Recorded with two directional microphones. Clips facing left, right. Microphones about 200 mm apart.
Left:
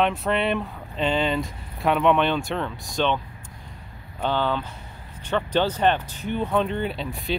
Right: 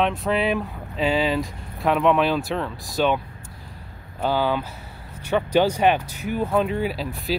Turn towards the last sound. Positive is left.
turn(degrees=0)  # may be behind; listen again after turning